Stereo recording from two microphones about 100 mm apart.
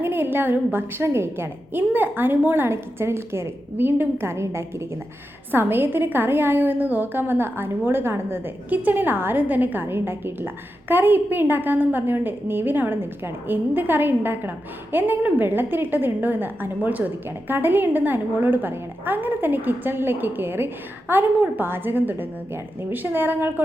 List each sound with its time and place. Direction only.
0.0 s a woman's voice: 20° right (ahead or behind)